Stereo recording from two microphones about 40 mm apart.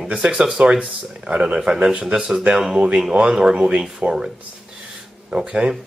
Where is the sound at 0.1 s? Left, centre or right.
Centre.